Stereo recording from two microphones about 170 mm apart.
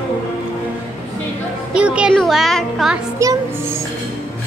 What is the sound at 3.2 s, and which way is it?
Music, 20° right (ahead or behind).